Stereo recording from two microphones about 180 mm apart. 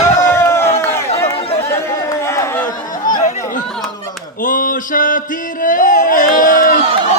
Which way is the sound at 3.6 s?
Centre (ahead or behind).